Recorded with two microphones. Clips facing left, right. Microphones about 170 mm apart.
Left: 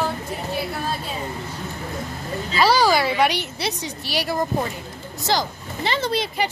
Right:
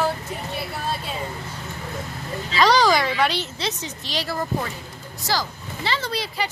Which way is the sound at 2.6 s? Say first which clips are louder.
Even; 5° left (ahead or behind).